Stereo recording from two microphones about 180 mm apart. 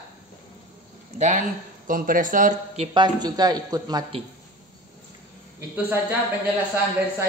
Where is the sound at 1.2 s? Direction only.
45° right (ahead or behind).